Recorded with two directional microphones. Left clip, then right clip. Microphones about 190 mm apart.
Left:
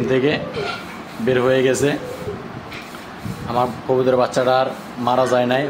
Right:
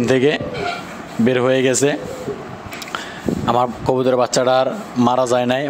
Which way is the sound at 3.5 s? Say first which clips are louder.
Left 1 dB; 50° right (ahead or behind).